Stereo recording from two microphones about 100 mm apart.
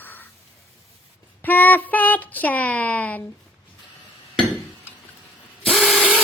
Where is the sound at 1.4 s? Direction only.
20° left (ahead or behind).